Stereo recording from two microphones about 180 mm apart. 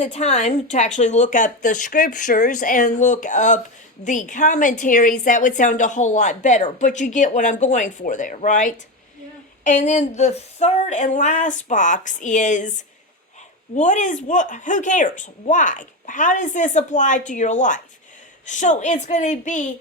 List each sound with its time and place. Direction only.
0.0 s a woman's voice: 40° left (ahead or behind)